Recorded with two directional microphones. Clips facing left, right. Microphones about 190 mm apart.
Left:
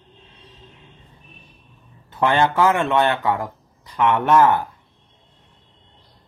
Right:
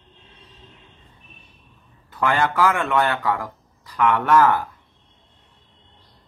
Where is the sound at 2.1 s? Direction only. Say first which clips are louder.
Left 3 dB; 25° left (ahead or behind).